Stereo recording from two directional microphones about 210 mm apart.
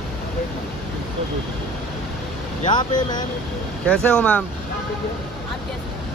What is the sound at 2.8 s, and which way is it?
Speech, 20° left (ahead or behind).